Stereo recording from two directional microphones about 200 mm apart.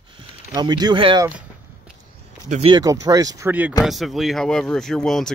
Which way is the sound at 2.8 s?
15° right (ahead or behind).